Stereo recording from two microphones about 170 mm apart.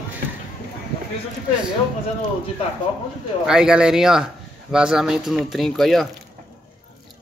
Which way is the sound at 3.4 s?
5° right (ahead or behind).